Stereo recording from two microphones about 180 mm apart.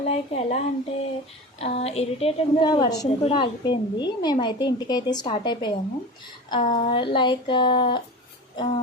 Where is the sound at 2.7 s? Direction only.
20° left (ahead or behind).